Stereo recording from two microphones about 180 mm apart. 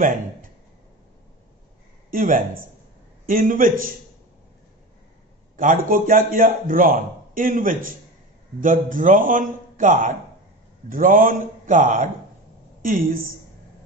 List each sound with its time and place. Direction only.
2.0 s a man's voice: 50° right (ahead or behind)
5.6 s a man's voice: 50° right (ahead or behind)